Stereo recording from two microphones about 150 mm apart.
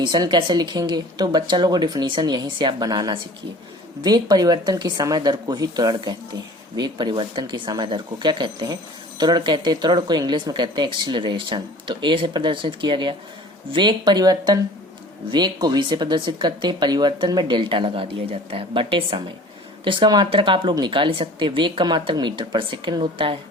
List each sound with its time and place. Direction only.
0.0 s a woman's voice: 30° right (ahead or behind)